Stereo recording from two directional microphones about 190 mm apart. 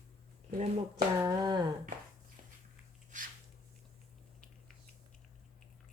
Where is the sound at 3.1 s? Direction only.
40° right (ahead or behind).